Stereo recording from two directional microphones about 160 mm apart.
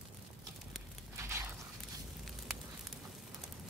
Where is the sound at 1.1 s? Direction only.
15° right (ahead or behind).